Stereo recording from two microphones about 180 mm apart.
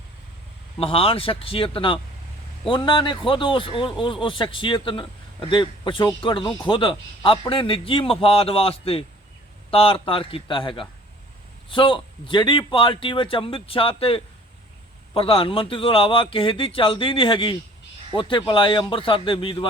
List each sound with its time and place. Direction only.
0.8 s a man's voice: 30° left (ahead or behind)